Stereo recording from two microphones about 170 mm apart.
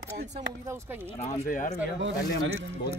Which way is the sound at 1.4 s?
50° left (ahead or behind).